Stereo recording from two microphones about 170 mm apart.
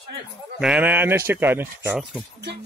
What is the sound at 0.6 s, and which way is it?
Speech, 10° right (ahead or behind).